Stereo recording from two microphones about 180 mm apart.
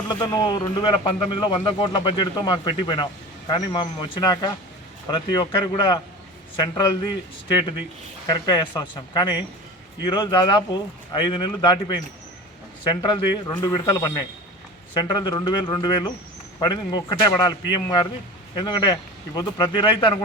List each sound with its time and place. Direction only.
0.1 s a man's voice: 25° left (ahead or behind)
8.3 s a man's voice: 25° left (ahead or behind)